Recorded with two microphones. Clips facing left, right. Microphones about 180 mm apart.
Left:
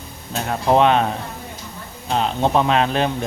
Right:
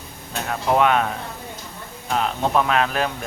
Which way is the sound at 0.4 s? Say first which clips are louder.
Left 3 dB; 30° left (ahead or behind).